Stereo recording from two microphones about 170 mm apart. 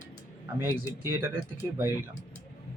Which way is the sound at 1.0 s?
15° right (ahead or behind).